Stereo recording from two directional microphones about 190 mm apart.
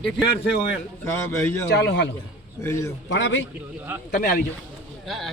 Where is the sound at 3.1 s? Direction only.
75° left (ahead or behind).